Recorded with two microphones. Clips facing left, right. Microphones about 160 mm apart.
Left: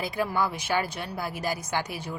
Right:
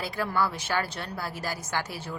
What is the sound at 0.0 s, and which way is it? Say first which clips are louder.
A woman's voice: left 1 dB; 15° left (ahead or behind).